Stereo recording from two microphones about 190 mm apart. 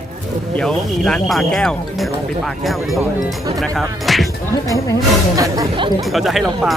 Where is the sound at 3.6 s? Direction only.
Centre (ahead or behind).